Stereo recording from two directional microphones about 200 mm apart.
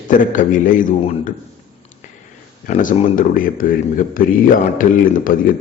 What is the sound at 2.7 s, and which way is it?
A man's voice, 40° left (ahead or behind).